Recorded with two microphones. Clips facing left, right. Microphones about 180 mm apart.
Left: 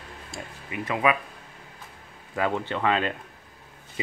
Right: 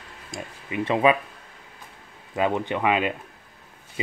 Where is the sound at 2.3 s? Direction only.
20° right (ahead or behind).